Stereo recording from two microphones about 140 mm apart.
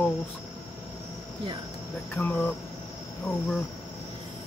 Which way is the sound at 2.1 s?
15° left (ahead or behind).